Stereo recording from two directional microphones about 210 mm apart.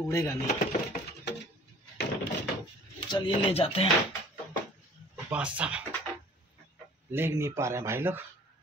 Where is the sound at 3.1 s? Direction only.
25° left (ahead or behind).